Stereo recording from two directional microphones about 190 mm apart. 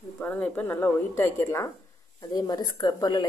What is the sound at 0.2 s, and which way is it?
A woman's voice, 5° left (ahead or behind).